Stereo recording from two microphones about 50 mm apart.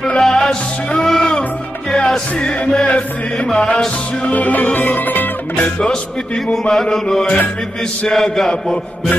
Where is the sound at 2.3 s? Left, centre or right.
Centre.